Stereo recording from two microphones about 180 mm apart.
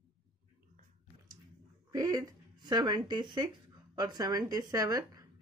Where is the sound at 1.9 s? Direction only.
20° right (ahead or behind).